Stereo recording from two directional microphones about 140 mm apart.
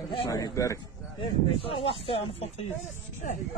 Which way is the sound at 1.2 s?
40° left (ahead or behind).